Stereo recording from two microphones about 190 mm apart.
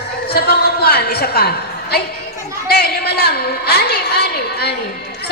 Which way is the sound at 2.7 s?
55° left (ahead or behind).